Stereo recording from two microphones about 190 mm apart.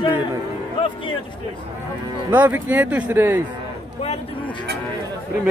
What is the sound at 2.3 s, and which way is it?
Speech, 10° right (ahead or behind).